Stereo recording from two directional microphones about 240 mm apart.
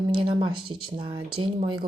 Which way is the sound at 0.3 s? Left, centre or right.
Right.